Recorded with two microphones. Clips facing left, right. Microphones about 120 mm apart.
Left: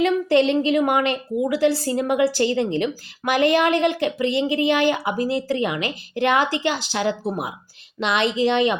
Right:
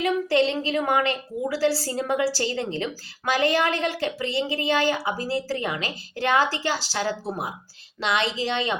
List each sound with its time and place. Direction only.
0.3 s a woman's voice: 20° left (ahead or behind)